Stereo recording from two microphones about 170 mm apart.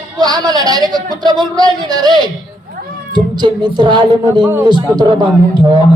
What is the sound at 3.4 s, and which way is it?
A man's voice, 25° right (ahead or behind).